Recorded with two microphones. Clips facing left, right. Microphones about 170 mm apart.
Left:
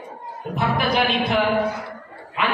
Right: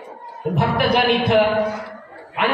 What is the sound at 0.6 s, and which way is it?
Speech, 65° right (ahead or behind).